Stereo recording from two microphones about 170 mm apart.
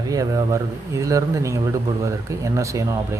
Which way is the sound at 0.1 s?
20° right (ahead or behind).